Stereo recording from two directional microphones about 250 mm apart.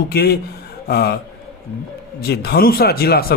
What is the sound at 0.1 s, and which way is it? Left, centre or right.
A man's voice, left.